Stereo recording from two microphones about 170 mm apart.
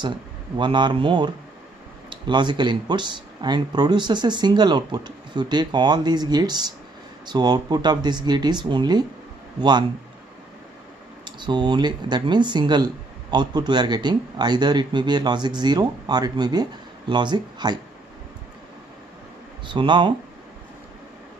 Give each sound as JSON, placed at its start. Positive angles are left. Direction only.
{"t": 0.6, "sound": "speech", "side_deg": -25}
{"t": 11.2, "sound": "speech", "side_deg": -25}
{"t": 19.7, "sound": "speech", "side_deg": -30}